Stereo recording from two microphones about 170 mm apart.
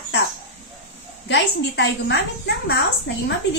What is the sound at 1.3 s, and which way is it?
Speech, 90° left.